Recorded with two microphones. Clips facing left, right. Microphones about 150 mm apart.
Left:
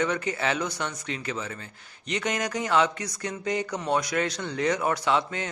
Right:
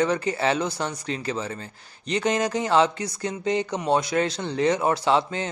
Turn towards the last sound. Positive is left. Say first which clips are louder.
# right 4 dB
turn(degrees=-30)  # may be behind; listen again after turning